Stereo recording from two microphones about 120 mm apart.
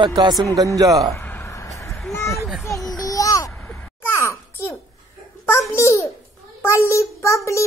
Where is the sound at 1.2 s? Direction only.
15° left (ahead or behind).